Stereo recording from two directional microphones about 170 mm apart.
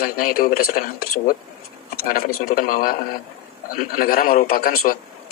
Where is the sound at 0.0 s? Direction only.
60° left (ahead or behind).